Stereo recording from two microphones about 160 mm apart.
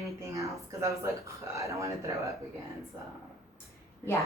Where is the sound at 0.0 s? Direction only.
20° right (ahead or behind).